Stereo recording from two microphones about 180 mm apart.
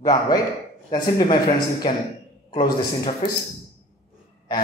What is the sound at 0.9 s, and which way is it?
A man's voice, 25° left (ahead or behind).